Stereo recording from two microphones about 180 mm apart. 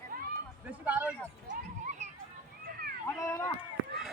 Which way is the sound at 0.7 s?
10° right (ahead or behind).